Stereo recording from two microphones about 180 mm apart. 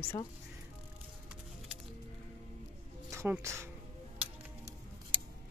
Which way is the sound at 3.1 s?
15° right (ahead or behind).